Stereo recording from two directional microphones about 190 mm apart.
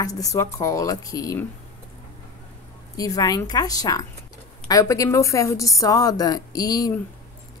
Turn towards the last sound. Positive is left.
turn(degrees=20)  # may be behind; listen again after turning